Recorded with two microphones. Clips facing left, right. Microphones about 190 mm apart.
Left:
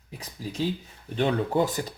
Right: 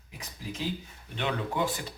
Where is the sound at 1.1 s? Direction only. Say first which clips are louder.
Left 7 dB; 35° left (ahead or behind).